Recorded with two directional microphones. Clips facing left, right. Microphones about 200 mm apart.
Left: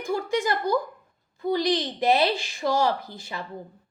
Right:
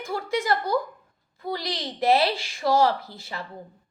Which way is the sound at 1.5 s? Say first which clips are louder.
Left 8 dB; 15° left (ahead or behind).